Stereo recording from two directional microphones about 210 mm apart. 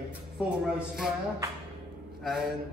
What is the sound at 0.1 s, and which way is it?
Speech, 5° right (ahead or behind).